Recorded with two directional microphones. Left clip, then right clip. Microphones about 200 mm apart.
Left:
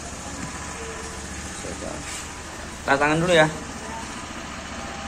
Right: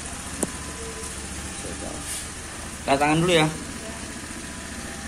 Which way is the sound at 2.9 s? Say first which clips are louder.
Left 1 dB; 20° right (ahead or behind).